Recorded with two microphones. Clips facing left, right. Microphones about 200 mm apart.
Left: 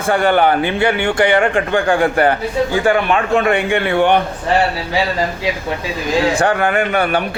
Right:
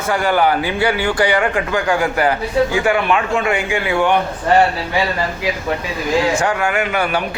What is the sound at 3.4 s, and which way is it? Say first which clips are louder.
Speech: left 4 dB; 60° left (ahead or behind).